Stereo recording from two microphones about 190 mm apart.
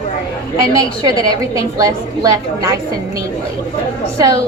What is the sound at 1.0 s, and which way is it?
A woman's voice, 20° right (ahead or behind).